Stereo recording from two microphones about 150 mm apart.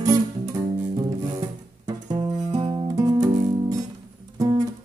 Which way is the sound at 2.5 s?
25° right (ahead or behind).